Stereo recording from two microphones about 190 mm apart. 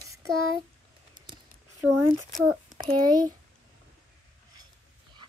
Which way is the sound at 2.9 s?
20° right (ahead or behind).